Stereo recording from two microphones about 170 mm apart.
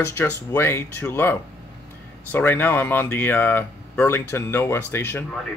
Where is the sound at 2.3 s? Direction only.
10° left (ahead or behind).